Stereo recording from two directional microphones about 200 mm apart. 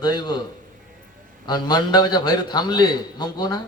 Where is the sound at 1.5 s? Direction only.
20° left (ahead or behind).